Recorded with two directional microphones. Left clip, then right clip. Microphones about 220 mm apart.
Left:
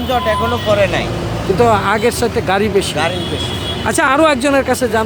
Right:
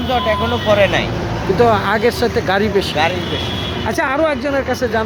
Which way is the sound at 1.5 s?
10° left (ahead or behind).